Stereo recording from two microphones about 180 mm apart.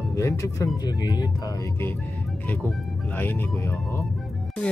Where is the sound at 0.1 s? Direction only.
15° left (ahead or behind).